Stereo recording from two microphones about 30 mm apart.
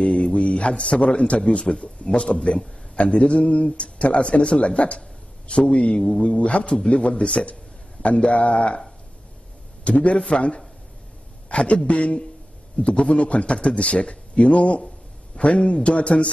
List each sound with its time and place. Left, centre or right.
0.1 s a man's voice: left
3.0 s a man's voice: left
9.9 s a man's voice: left